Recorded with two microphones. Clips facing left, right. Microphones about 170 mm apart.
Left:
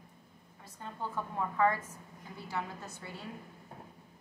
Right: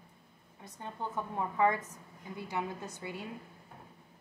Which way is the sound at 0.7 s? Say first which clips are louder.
Right 1 dB; 20° right (ahead or behind).